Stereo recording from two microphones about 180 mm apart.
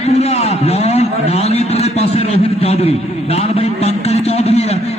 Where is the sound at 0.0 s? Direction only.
35° left (ahead or behind).